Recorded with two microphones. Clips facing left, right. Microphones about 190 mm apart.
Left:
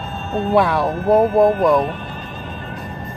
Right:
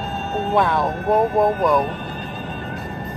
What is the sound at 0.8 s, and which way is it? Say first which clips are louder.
Speech: left 3 dB; 30° left (ahead or behind).